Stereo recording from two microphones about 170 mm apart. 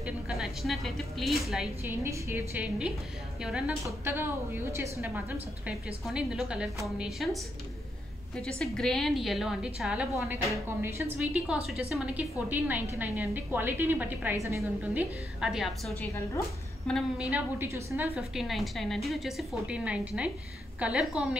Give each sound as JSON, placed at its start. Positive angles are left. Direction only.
{"t": 0.0, "sound": "a woman's voice", "side_deg": 0}
{"t": 1.9, "sound": "a woman's voice", "side_deg": -15}
{"t": 5.7, "sound": "a woman's voice", "side_deg": -5}
{"t": 8.4, "sound": "a woman's voice", "side_deg": 5}
{"t": 10.5, "sound": "a woman's voice", "side_deg": -15}
{"t": 18.1, "sound": "a woman's voice", "side_deg": 0}